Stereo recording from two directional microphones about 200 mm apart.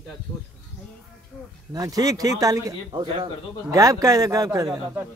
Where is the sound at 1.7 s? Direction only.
15° right (ahead or behind).